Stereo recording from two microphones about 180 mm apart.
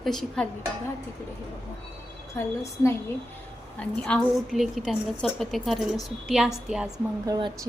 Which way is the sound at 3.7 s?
5° left (ahead or behind).